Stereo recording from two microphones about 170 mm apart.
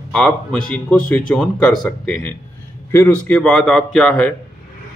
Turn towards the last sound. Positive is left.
turn(degrees=5)  # may be behind; listen again after turning